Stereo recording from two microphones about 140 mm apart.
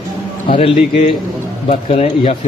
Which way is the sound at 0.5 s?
40° left (ahead or behind).